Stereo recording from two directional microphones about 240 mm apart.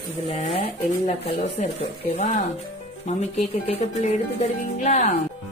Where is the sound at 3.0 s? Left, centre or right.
Left.